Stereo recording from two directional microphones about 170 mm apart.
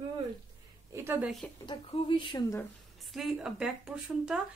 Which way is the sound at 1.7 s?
30° left (ahead or behind).